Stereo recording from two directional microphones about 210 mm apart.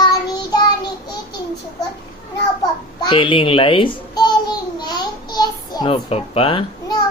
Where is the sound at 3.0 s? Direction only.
25° left (ahead or behind).